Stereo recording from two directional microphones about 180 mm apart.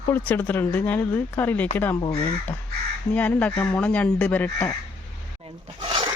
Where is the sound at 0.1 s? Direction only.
10° left (ahead or behind).